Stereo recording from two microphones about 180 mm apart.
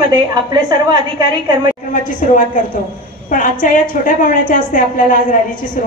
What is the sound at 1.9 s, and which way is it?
A woman's voice, 45° left (ahead or behind).